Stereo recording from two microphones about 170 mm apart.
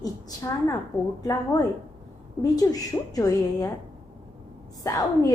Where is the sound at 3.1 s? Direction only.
20° left (ahead or behind).